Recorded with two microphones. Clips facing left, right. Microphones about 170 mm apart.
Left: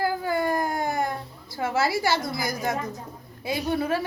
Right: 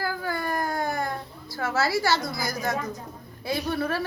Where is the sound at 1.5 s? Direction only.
15° left (ahead or behind).